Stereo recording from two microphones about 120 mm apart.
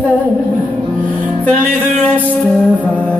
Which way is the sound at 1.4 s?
15° left (ahead or behind).